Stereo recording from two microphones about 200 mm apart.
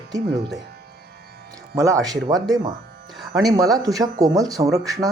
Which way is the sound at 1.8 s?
15° right (ahead or behind).